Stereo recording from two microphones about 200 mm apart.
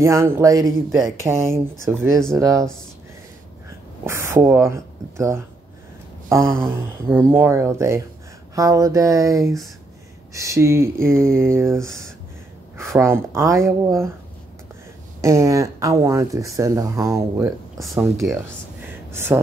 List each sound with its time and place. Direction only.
0.0 s speech: 15° right (ahead or behind)
4.0 s speech: 15° right (ahead or behind)
15.2 s speech: 15° right (ahead or behind)